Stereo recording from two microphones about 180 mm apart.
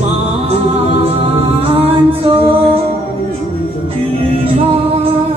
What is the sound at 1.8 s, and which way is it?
Music, 30° right (ahead or behind).